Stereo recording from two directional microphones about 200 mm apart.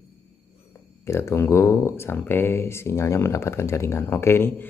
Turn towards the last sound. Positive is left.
turn(degrees=10)  # may be behind; listen again after turning